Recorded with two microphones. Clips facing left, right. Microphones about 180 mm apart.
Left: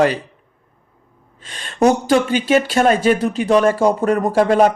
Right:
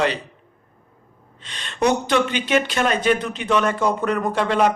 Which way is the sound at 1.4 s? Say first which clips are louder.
Left 6 dB; 45° left (ahead or behind).